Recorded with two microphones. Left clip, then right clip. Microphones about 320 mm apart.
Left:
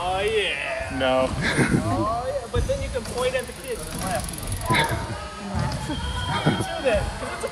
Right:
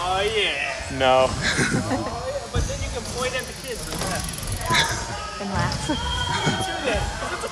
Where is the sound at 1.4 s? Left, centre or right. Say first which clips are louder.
Even; centre.